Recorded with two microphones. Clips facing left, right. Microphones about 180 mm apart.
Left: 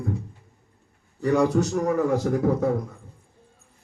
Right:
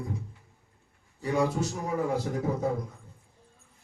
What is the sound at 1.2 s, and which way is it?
A man's voice, 70° left (ahead or behind).